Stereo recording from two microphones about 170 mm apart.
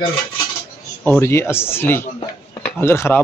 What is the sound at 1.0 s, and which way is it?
Speech, 15° left (ahead or behind).